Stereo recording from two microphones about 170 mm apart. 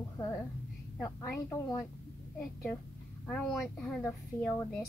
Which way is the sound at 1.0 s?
15° left (ahead or behind).